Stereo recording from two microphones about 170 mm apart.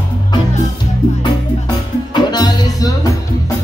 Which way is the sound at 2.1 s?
25° left (ahead or behind).